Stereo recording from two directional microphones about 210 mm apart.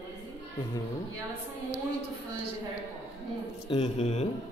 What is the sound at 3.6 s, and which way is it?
Speech, 25° left (ahead or behind).